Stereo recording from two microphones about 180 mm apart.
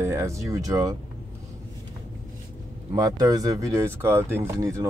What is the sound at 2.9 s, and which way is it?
Speech, 20° right (ahead or behind).